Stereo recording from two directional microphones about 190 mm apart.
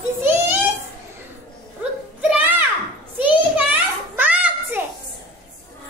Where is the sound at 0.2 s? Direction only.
10° right (ahead or behind).